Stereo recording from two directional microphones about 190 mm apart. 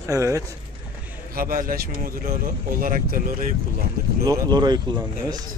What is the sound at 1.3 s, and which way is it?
Speech, 50° right (ahead or behind).